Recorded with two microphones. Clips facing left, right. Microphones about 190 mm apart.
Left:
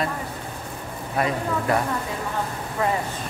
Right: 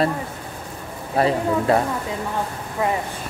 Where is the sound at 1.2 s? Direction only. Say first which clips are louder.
Right 5 dB; 30° right (ahead or behind).